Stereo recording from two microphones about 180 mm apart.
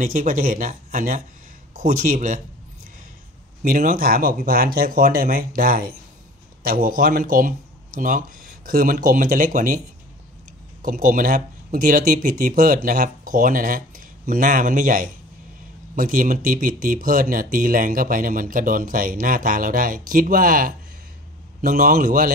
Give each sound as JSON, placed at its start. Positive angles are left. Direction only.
{"t": 0.0, "sound": "speech", "side_deg": -50}
{"t": 3.6, "sound": "speech", "side_deg": -50}
{"t": 10.8, "sound": "speech", "side_deg": -50}